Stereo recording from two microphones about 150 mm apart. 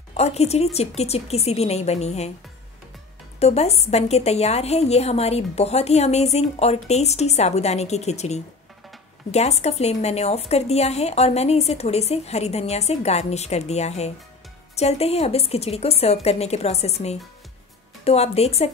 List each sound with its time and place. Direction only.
0.1 s a woman's voice: 45° left (ahead or behind)
3.3 s a woman's voice: 45° left (ahead or behind)